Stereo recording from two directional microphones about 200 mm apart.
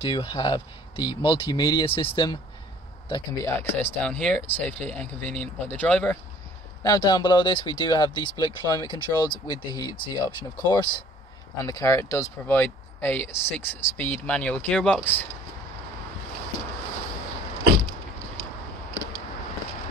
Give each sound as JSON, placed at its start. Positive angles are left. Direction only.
{"t": 0.0, "sound": "speech", "side_deg": 25}
{"t": 6.8, "sound": "speech", "side_deg": 20}